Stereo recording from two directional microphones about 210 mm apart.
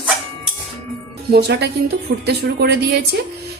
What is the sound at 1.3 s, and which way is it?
A woman's voice, 50° right (ahead or behind).